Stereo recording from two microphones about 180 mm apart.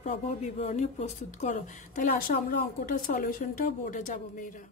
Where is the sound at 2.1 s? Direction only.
55° left (ahead or behind).